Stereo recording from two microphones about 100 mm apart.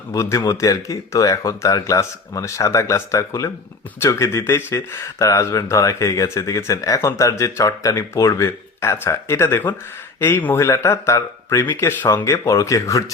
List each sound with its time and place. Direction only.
0.1 s speech: 30° left (ahead or behind)